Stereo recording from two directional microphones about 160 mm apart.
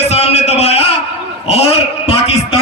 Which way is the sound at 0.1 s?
40° left (ahead or behind).